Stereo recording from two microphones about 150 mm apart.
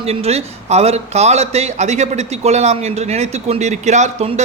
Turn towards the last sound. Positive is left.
turn(degrees=-45)  # may be behind; listen again after turning